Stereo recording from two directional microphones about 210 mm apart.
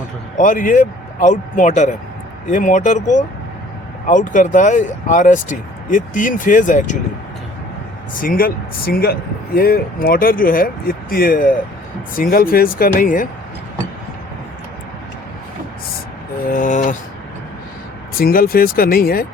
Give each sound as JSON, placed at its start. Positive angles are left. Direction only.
{"t": 0.3, "sound": "speech", "side_deg": 40}
{"t": 8.1, "sound": "speech", "side_deg": 40}
{"t": 16.5, "sound": "speech", "side_deg": 40}
{"t": 18.2, "sound": "speech", "side_deg": 45}